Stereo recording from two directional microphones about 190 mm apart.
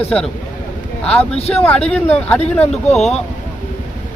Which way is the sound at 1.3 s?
35° left (ahead or behind).